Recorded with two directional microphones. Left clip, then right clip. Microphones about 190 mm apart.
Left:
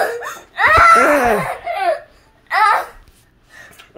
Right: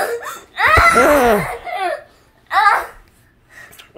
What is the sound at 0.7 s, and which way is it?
Speech, 25° right (ahead or behind).